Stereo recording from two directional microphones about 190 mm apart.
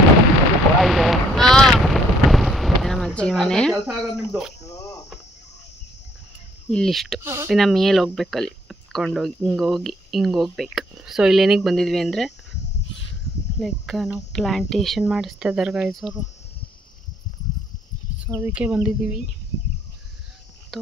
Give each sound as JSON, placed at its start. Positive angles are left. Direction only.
{"t": 0.8, "sound": "boat", "side_deg": 0}
{"t": 3.7, "sound": "speech", "side_deg": -15}
{"t": 4.6, "sound": "cricket", "side_deg": 15}
{"t": 6.7, "sound": "speech", "side_deg": 0}
{"t": 7.2, "sound": "speech", "side_deg": -15}
{"t": 7.5, "sound": "speech", "side_deg": 0}
{"t": 13.6, "sound": "speech", "side_deg": 0}
{"t": 18.3, "sound": "speech", "side_deg": -10}
{"t": 20.7, "sound": "speech", "side_deg": 0}